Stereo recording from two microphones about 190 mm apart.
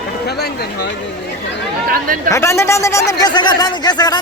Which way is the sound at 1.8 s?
50° right (ahead or behind).